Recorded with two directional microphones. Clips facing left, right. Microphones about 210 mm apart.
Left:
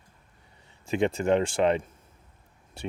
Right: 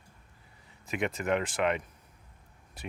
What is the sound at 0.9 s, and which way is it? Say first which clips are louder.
Speech: left 6 dB; 30° left (ahead or behind).